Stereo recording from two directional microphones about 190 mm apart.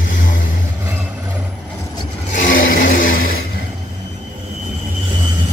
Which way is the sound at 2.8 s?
45° left (ahead or behind).